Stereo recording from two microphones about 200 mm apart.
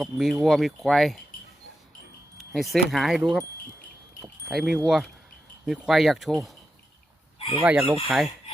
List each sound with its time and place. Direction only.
0.0 s speech: centre (ahead or behind)
2.4 s speech: centre (ahead or behind)
4.2 s a sound: 5° right (ahead or behind)
5.6 s speech: 5° right (ahead or behind)
7.3 s chicken: 30° left (ahead or behind)
7.6 s speech: 5° right (ahead or behind)